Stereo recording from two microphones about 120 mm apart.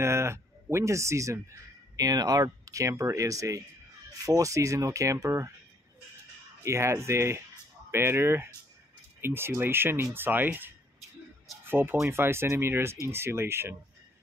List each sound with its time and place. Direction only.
0.0 s speech: 20° right (ahead or behind)
6.6 s speech: 25° right (ahead or behind)